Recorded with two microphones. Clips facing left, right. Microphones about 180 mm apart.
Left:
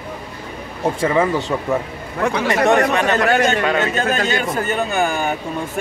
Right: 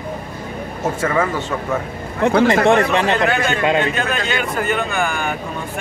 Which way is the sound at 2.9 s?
30° right (ahead or behind).